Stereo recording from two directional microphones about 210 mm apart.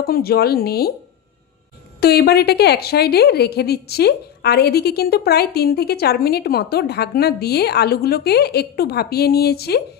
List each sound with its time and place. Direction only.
0.0 s a woman's voice: 45° left (ahead or behind)
2.0 s a woman's voice: 50° left (ahead or behind)